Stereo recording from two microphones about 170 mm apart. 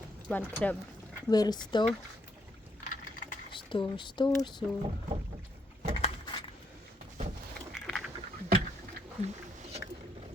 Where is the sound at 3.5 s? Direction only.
30° left (ahead or behind).